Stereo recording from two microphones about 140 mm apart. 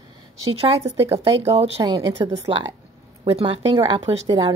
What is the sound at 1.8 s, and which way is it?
Speech, 30° right (ahead or behind).